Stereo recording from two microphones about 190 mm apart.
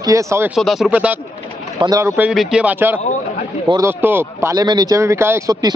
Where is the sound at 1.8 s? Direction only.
20° right (ahead or behind).